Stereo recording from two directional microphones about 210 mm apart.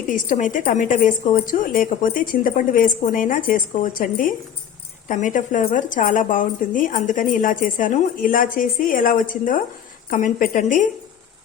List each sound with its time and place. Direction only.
0.1 s a woman's voice: 40° left (ahead or behind)